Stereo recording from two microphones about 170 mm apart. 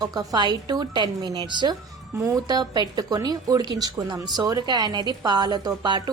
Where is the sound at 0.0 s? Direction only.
20° right (ahead or behind).